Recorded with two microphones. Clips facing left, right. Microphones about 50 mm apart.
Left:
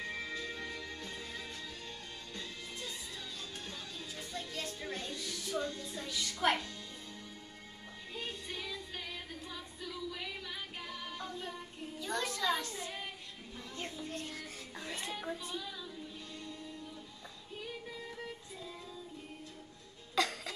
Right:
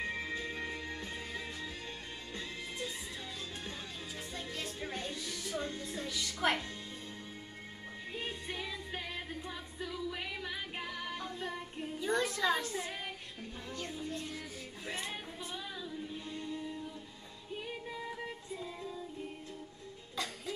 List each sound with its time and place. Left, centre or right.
0.0 s music: right
4.3 s music: right
5.2 s music: centre
5.6 s music: right
6.1 s music: centre
8.1 s music: right
12.0 s a sound: right
14.0 s music: left
14.9 s a sound: right
17.9 s music: right
20.2 s music: left